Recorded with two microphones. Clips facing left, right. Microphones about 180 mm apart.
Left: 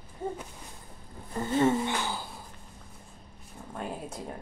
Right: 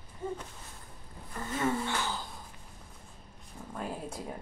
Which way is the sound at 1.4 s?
30° left (ahead or behind).